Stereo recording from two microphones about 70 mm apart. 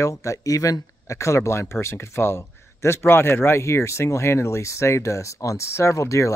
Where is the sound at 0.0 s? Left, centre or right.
Left.